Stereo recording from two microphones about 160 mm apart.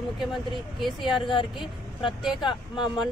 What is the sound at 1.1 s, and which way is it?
Speech, 30° left (ahead or behind).